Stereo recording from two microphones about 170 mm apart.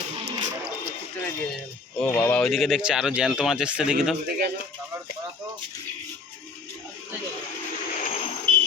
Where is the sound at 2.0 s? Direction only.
5° left (ahead or behind).